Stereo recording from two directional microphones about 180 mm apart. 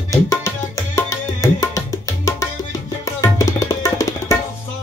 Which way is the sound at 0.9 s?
15° left (ahead or behind).